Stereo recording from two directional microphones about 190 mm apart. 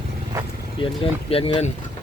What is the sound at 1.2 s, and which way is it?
Speech, 30° left (ahead or behind).